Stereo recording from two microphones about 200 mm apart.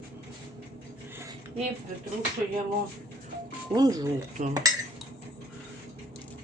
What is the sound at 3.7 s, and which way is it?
Speech, 20° right (ahead or behind).